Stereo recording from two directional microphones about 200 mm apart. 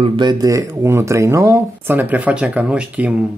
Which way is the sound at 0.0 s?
25° right (ahead or behind).